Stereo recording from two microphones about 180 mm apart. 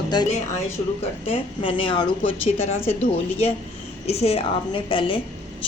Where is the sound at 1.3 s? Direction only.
30° left (ahead or behind).